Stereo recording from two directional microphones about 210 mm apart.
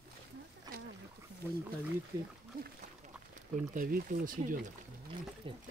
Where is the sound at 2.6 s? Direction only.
40° right (ahead or behind).